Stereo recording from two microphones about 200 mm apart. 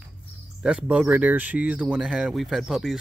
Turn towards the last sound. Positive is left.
turn(degrees=0)  # may be behind; listen again after turning